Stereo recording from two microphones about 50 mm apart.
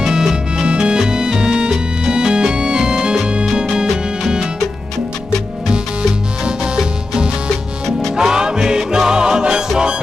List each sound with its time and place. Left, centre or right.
0.0 s music: centre
6.4 s music: centre